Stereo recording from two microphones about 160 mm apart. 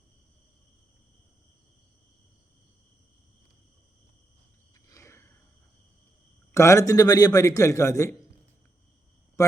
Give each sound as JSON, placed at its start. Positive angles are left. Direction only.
{"t": 4.9, "sound": "a sound", "side_deg": 15}
{"t": 6.5, "sound": "a man's voice", "side_deg": 20}
{"t": 9.4, "sound": "speech", "side_deg": 20}